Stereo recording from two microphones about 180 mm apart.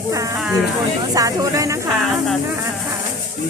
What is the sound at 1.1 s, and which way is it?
Speech, 20° right (ahead or behind).